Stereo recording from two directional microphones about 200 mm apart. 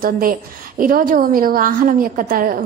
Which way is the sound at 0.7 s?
45° right (ahead or behind).